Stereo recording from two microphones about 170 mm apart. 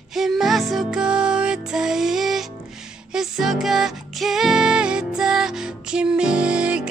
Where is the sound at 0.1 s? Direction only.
Centre (ahead or behind).